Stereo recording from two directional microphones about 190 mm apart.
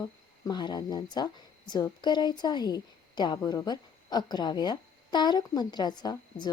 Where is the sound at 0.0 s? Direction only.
20° left (ahead or behind).